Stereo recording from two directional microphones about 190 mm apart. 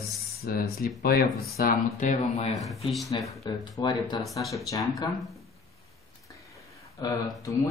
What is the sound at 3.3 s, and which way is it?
Speech, 20° left (ahead or behind).